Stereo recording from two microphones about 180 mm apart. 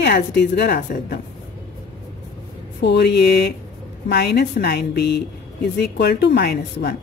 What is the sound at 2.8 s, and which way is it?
A woman's voice, 70° left (ahead or behind).